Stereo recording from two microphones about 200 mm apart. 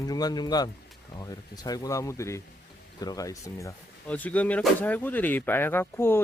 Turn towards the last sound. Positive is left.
turn(degrees=10)  # may be behind; listen again after turning